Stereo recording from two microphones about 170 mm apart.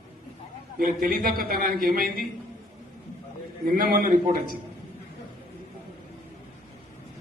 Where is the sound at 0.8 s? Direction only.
55° right (ahead or behind).